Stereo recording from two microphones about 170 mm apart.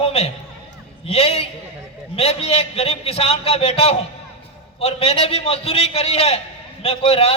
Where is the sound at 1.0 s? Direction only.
35° left (ahead or behind).